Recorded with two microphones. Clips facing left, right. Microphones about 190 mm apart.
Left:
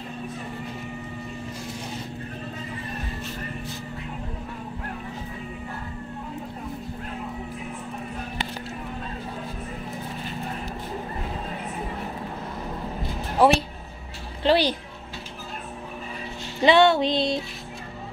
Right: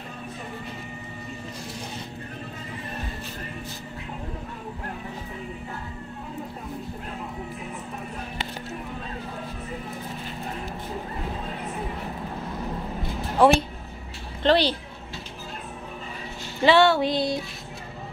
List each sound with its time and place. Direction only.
13.4 s a woman's voice: 5° left (ahead or behind)
16.6 s music: 20° left (ahead or behind)